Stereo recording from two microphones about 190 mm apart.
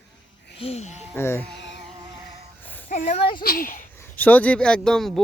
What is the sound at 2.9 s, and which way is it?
Speech, 40° left (ahead or behind).